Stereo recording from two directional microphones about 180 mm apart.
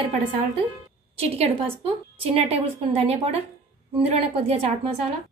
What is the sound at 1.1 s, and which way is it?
A woman's voice, 35° right (ahead or behind).